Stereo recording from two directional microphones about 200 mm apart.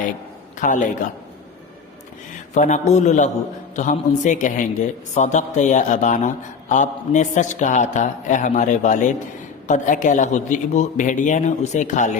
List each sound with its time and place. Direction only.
0.6 s a man's voice: 40° left (ahead or behind)
2.6 s a man's voice: 35° left (ahead or behind)